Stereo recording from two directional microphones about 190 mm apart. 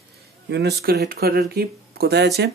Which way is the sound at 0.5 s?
60° right (ahead or behind).